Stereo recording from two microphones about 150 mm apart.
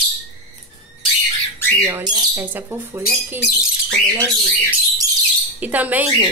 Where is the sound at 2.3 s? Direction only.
10° right (ahead or behind).